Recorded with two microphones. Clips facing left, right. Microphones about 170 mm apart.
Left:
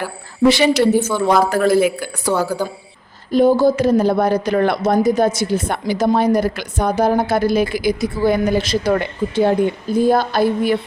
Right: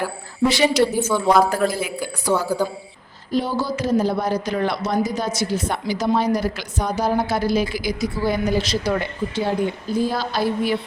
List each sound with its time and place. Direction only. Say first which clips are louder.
0.4 s speech: left 4 dB; 65° left (ahead or behind)
1.0 s a woman's voice: left 1 dB; centre (ahead or behind)
1.5 s a woman's voice: left 7 dB; 65° left (ahead or behind)
3.3 s a woman's voice: left 10 dB; 50° left (ahead or behind)